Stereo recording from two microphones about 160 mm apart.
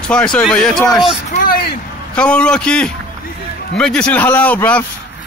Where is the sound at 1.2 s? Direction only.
55° left (ahead or behind); by 1.8 s 70° left (ahead or behind).